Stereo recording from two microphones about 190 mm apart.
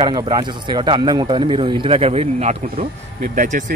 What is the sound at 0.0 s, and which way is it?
Speech, 20° right (ahead or behind).